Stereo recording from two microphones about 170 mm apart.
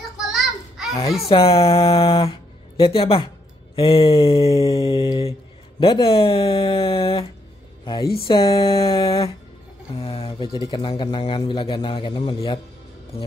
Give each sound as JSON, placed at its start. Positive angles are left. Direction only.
{"t": 0.3, "sound": "a sound", "side_deg": 0}
{"t": 1.3, "sound": "speech", "side_deg": 35}
{"t": 4.4, "sound": "speech", "side_deg": 20}
{"t": 8.3, "sound": "speech", "side_deg": 20}
{"t": 9.9, "sound": "speech", "side_deg": 35}